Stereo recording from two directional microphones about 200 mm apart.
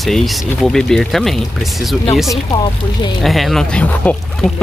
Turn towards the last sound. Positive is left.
turn(degrees=5)  # may be behind; listen again after turning